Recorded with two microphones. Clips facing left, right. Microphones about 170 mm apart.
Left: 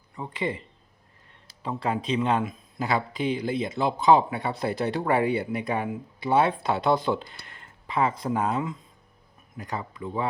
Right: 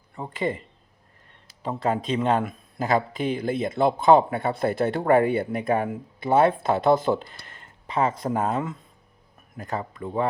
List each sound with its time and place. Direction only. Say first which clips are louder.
0.2 s speech: right 3 dB; 45° right (ahead or behind)
1.6 s speech: right 3 dB; 45° right (ahead or behind)